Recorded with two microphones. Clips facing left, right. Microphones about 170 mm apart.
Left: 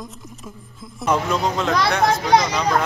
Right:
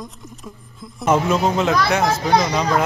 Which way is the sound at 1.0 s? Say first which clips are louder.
Right 3 dB; 5° right (ahead or behind).